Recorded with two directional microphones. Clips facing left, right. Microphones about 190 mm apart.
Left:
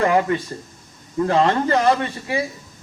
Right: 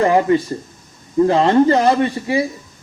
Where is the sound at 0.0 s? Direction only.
25° right (ahead or behind).